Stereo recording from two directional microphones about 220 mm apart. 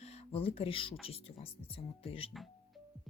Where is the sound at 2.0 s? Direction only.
25° left (ahead or behind).